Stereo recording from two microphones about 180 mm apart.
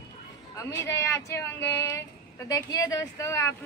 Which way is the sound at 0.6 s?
15° left (ahead or behind).